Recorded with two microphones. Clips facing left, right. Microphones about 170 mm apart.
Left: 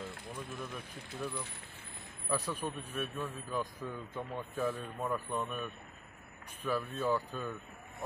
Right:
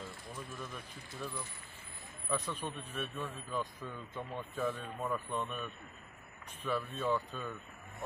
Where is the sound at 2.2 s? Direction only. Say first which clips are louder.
Left 2 dB; 5° left (ahead or behind).